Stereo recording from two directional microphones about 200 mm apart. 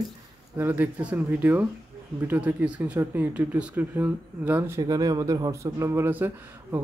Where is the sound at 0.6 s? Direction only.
10° right (ahead or behind).